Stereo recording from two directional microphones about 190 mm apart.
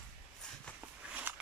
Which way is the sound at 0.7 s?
5° right (ahead or behind).